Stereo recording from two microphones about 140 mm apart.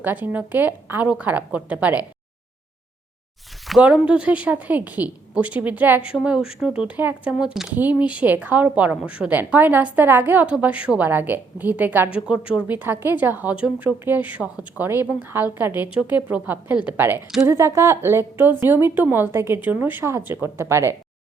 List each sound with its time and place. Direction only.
0.0 s a woman's voice: 15° right (ahead or behind)
3.7 s a woman's voice: 5° right (ahead or behind)